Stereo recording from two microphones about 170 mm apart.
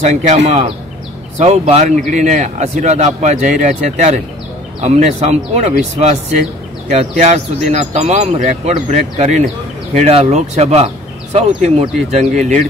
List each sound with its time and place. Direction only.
0.0 s speech: 45° right (ahead or behind)
1.4 s speech: 40° right (ahead or behind)